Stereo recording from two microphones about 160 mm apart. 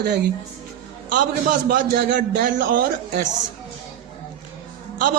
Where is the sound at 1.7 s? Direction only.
90° right; by 3.2 s 65° right (ahead or behind).